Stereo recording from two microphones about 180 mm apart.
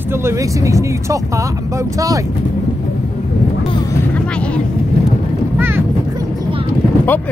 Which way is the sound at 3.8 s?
10° left (ahead or behind).